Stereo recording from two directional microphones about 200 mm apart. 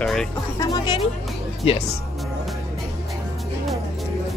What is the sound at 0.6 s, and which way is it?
Music, 20° left (ahead or behind).